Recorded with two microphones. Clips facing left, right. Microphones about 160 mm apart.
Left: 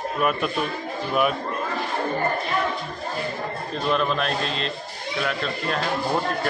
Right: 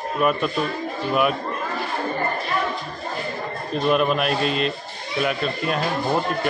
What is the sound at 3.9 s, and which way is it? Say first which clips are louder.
A man's voice: right 3 dB; 15° right (ahead or behind).